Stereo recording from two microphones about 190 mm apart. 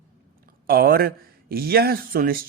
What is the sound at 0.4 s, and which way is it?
A woman's voice, 50° right (ahead or behind).